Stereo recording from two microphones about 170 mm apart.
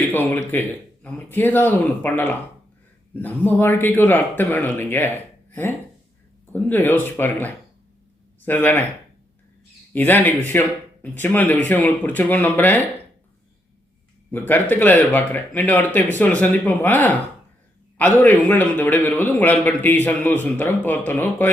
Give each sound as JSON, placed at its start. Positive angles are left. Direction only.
{"t": 0.1, "sound": "a man's voice", "side_deg": 10}
{"t": 9.9, "sound": "a man's voice", "side_deg": 10}
{"t": 14.3, "sound": "a man's voice", "side_deg": 10}